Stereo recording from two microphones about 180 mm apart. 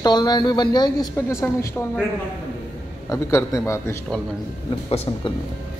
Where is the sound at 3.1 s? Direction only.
15° left (ahead or behind).